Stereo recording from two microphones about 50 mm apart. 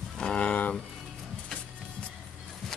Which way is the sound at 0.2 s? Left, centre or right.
Left.